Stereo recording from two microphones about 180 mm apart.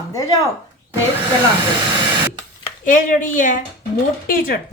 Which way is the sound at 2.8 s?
45° left (ahead or behind).